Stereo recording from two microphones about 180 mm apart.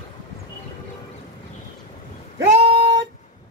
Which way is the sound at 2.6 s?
30° right (ahead or behind).